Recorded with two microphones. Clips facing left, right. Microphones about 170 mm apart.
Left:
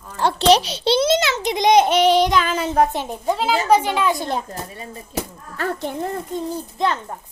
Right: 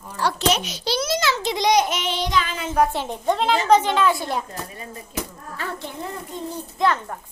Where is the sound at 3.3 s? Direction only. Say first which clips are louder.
Even; 5° left (ahead or behind).